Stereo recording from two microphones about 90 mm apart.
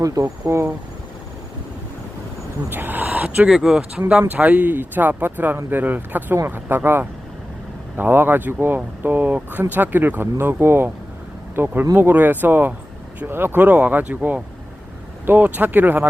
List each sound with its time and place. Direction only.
0.0 s speech: 40° right (ahead or behind)
2.6 s speech: 20° right (ahead or behind)